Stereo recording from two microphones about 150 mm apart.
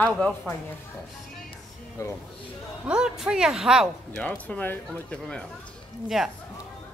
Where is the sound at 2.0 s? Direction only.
20° left (ahead or behind).